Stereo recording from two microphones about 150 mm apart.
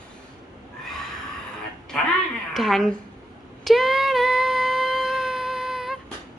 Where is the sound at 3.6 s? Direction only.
Centre (ahead or behind).